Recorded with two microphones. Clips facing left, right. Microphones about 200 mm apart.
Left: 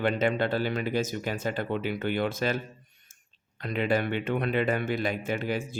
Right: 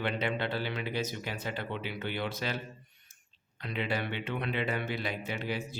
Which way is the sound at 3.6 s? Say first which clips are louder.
Left 7 dB; 50° left (ahead or behind).